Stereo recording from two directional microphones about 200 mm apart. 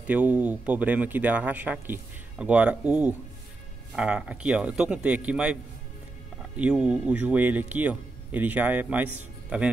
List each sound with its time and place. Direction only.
0.0 s speech: 5° right (ahead or behind)
6.6 s speech: 5° right (ahead or behind)